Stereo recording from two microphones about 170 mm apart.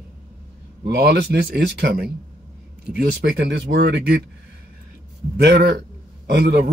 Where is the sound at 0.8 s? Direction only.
80° right.